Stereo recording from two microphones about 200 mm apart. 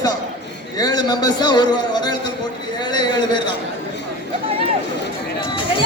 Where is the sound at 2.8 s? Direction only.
20° left (ahead or behind).